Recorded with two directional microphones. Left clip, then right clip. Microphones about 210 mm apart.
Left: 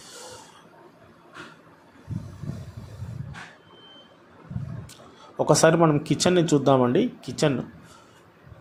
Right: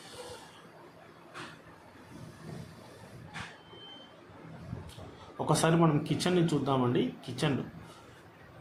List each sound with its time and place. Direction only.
5.5 s speech: 30° left (ahead or behind)